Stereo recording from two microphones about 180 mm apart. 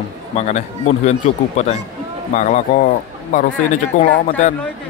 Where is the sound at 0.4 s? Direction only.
40° left (ahead or behind).